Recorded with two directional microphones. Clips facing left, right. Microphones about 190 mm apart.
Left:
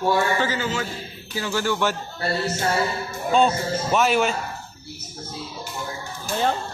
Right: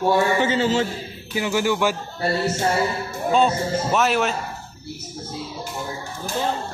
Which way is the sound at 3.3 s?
Centre (ahead or behind).